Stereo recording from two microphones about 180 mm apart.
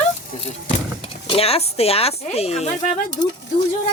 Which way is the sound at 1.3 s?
35° left (ahead or behind).